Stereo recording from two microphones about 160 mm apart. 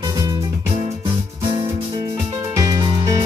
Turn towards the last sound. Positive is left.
turn(degrees=-25)  # may be behind; listen again after turning